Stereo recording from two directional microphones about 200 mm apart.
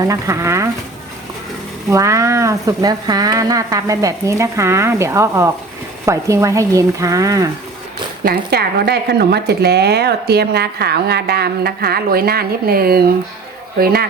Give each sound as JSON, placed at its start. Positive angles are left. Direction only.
{"t": 0.0, "sound": "speech", "side_deg": -15}
{"t": 1.9, "sound": "speech", "side_deg": -15}
{"t": 8.2, "sound": "speech", "side_deg": -50}